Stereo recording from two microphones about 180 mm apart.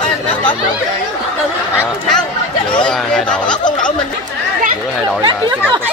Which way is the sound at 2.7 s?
5° left (ahead or behind).